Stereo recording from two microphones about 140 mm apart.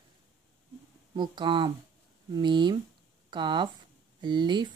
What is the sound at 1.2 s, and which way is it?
Speech, 35° right (ahead or behind).